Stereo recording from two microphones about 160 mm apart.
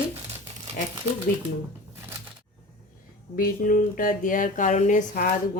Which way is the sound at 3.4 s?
65° left (ahead or behind).